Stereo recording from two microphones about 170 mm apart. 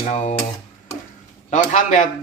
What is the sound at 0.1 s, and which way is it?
Dishes, 40° left (ahead or behind).